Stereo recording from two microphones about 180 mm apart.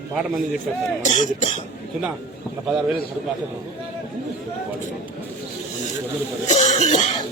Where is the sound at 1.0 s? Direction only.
40° left (ahead or behind).